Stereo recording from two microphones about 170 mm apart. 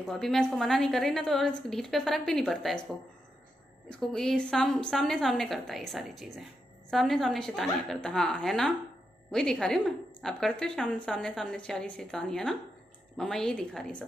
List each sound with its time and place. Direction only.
0.0 s a woman's voice: centre (ahead or behind)
3.9 s a woman's voice: 5° left (ahead or behind)